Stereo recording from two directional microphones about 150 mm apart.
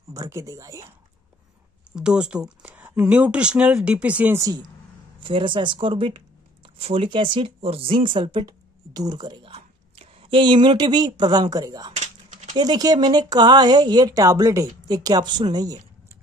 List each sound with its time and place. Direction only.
0.1 s speech: 20° right (ahead or behind)
1.9 s speech: 5° right (ahead or behind)
5.2 s speech: 35° right (ahead or behind)
12.0 s typing: 55° right (ahead or behind)
12.5 s speech: 25° right (ahead or behind)